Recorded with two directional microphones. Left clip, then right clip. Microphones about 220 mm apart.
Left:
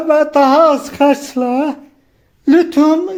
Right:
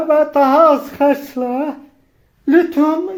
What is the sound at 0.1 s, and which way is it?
Speech, 35° left (ahead or behind).